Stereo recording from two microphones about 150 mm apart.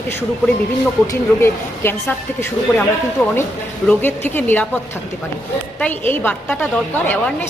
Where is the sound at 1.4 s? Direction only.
15° left (ahead or behind).